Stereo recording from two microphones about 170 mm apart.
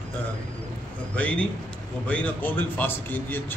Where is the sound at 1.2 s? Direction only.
5° left (ahead or behind).